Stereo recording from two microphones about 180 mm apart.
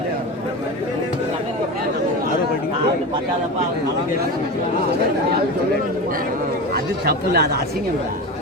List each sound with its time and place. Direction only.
7.0 s speech: 60° right (ahead or behind)